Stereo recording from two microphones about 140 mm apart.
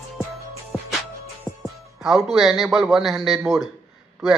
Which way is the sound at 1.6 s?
Centre (ahead or behind).